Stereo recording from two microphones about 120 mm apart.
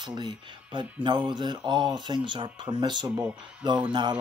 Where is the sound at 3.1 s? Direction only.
10° right (ahead or behind).